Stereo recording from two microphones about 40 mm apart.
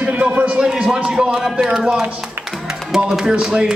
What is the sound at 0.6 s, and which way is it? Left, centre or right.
Speech, centre.